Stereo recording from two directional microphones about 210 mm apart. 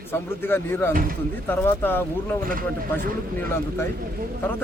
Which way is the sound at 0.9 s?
45° right (ahead or behind).